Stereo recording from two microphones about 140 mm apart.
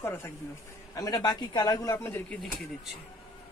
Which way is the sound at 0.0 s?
15° left (ahead or behind).